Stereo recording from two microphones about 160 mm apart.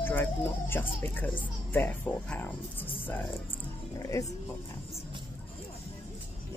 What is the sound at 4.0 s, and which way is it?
Speech, 20° left (ahead or behind).